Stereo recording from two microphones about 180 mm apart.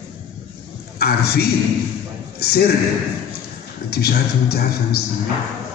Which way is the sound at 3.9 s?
60° left (ahead or behind).